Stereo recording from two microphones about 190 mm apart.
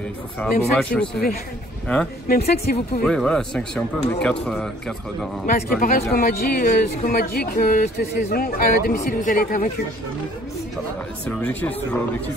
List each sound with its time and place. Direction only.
0.4 s a man's voice: 5° left (ahead or behind)
2.2 s speech: 55° left (ahead or behind)
3.0 s a man's voice: 5° left (ahead or behind)
5.5 s speech: 45° left (ahead or behind)
11.2 s speech: 5° left (ahead or behind)